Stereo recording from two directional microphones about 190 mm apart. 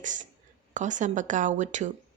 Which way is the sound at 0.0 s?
40° right (ahead or behind).